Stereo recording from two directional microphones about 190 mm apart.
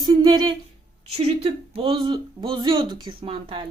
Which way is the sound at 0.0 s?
25° right (ahead or behind).